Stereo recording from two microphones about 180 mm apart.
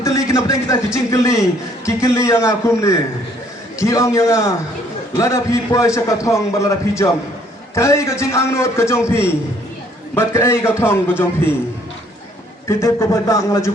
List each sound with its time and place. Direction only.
0.0 s a sound: 15° left (ahead or behind)
0.9 s a man's voice: 15° left (ahead or behind)
12.6 s a man's voice: 15° left (ahead or behind)